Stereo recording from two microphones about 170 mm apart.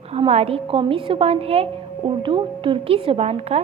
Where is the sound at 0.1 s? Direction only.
35° right (ahead or behind).